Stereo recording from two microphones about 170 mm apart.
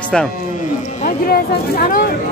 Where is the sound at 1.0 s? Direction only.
60° left (ahead or behind).